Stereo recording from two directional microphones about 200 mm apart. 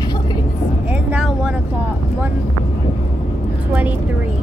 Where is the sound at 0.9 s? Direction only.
5° right (ahead or behind).